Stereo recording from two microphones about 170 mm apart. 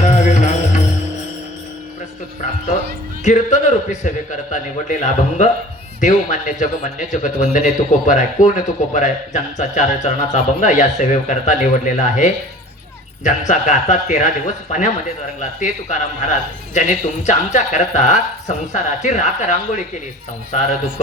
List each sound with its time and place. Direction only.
0.0 s music: 45° left (ahead or behind)
3.2 s a man's voice: 45° left (ahead or behind)